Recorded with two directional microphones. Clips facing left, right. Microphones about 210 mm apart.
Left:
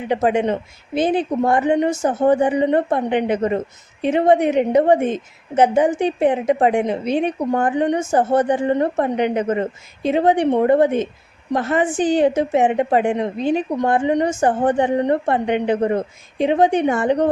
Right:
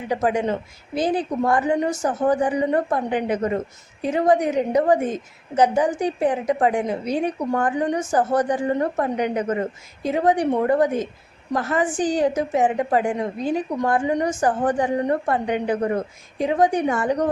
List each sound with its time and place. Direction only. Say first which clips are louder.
0.1 s a woman's voice: left 4 dB; 25° left (ahead or behind)